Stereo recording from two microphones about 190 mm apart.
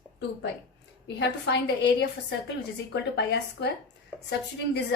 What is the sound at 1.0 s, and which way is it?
A woman's voice, 65° left (ahead or behind).